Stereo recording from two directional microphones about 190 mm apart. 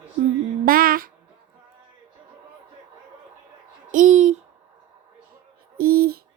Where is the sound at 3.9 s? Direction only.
40° right (ahead or behind).